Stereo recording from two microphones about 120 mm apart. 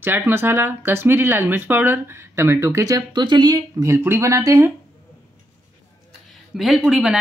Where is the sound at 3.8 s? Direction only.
20° right (ahead or behind).